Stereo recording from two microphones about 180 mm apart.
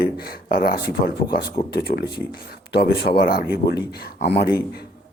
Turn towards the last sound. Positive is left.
turn(degrees=65)  # may be behind; listen again after turning